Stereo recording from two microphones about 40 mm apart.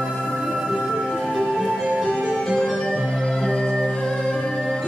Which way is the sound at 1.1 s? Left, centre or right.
Centre.